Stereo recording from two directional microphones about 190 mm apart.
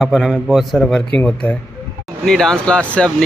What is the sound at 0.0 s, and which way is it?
Speech, centre (ahead or behind).